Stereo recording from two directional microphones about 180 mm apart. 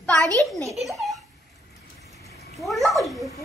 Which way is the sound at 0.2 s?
20° right (ahead or behind).